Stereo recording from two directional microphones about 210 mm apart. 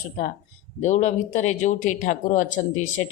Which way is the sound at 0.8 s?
35° left (ahead or behind).